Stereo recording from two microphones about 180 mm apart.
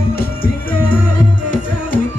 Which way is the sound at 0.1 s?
55° left (ahead or behind).